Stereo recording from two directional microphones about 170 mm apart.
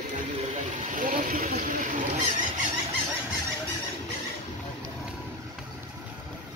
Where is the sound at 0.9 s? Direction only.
50° right (ahead or behind).